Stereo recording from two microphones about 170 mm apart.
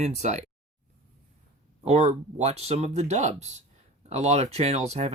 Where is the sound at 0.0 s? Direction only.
40° right (ahead or behind).